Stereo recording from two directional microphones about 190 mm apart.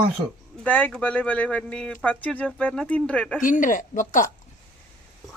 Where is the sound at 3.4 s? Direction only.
45° left (ahead or behind).